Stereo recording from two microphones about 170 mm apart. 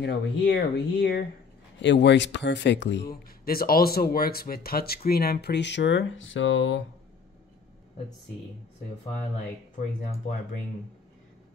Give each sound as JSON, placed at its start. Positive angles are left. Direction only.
{"t": 0.0, "sound": "speech", "side_deg": 85}
{"t": 1.8, "sound": "speech", "side_deg": 90}
{"t": 3.1, "sound": "speech", "side_deg": 60}